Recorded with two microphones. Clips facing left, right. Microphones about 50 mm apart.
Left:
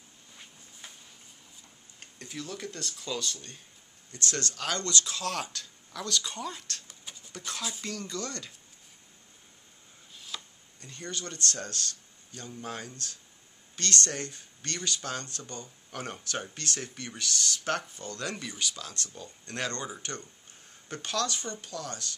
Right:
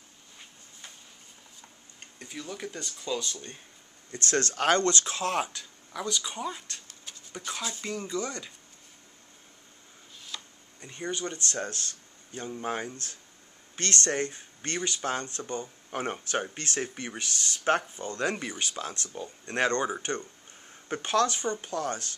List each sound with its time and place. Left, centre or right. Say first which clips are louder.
2.0 s speech: left 1 dB; centre
3.3 s speech: right 5 dB; right
4.1 s speech: right 5 dB; right; by 8.5 s centre
10.1 s tick-tock: even; centre
10.8 s speech: right 5 dB; right